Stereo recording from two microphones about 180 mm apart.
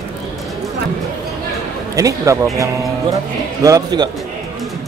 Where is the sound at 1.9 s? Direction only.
20° right (ahead or behind).